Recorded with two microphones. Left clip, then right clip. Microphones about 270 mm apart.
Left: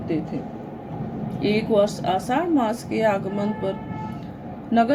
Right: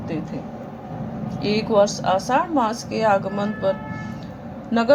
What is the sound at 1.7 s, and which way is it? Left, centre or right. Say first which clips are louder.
Speech: right 4 dB; centre.